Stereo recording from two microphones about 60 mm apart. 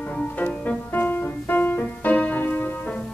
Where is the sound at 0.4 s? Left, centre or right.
Left.